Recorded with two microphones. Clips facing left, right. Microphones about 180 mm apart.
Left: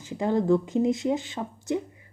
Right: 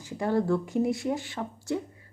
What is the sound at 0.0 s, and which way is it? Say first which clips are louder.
A woman's voice: left 2 dB; 20° left (ahead or behind).